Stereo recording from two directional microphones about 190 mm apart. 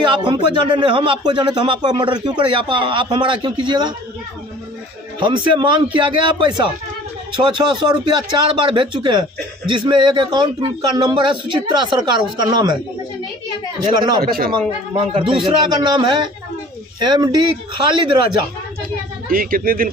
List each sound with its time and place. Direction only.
0.1 s a man's voice: 25° right (ahead or behind)
5.2 s a man's voice: 25° right (ahead or behind)
13.7 s a man's voice: 20° right (ahead or behind)
14.2 s speech: 50° right (ahead or behind)
15.1 s a man's voice: 25° right (ahead or behind)
19.2 s speech: 50° right (ahead or behind)